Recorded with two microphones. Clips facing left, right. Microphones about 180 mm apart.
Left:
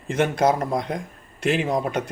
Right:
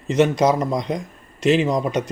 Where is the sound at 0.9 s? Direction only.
55° left (ahead or behind).